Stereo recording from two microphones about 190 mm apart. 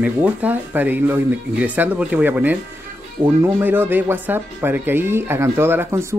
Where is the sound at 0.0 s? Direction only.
10° right (ahead or behind).